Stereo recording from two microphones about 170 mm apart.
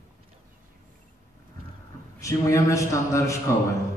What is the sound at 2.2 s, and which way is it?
A man's voice, 20° left (ahead or behind).